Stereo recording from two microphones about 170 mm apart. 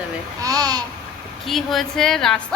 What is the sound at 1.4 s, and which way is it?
A woman's voice, centre (ahead or behind).